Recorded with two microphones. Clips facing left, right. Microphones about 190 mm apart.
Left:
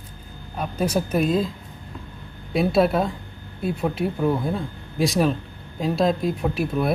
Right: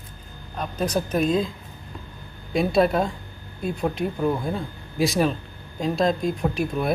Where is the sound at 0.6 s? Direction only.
10° left (ahead or behind).